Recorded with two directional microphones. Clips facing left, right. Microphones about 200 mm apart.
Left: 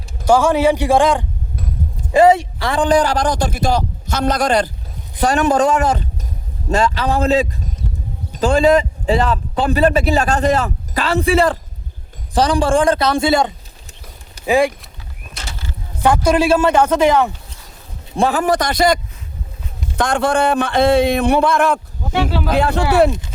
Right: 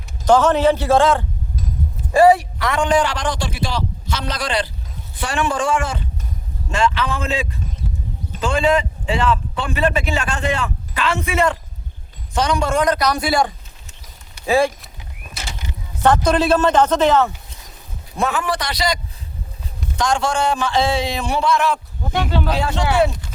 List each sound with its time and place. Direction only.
0.3 s a man's voice: 10° left (ahead or behind)
16.0 s speech: 10° left (ahead or behind)
18.2 s a man's voice: 35° left (ahead or behind)
20.0 s speech: 55° left (ahead or behind)
22.1 s speech: 5° left (ahead or behind)
22.4 s speech: 55° left (ahead or behind)